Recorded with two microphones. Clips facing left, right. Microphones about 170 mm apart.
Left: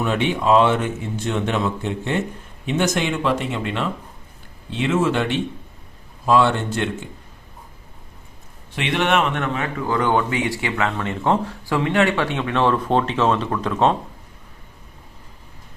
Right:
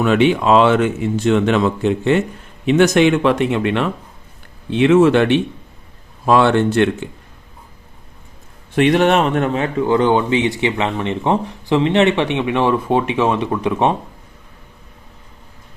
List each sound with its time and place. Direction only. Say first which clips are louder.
0.0 s a man's voice: right 7 dB; 90° right; by 7.1 s 70° right (ahead or behind)
8.7 s speech: right 7 dB; 45° right (ahead or behind); by 13.9 s 15° right (ahead or behind)